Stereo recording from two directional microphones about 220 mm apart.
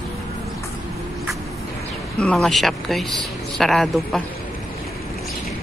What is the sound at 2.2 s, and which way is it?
Speech, centre (ahead or behind).